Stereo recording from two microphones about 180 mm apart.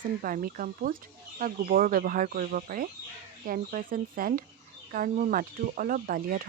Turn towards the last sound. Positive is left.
turn(degrees=-50)  # may be behind; listen again after turning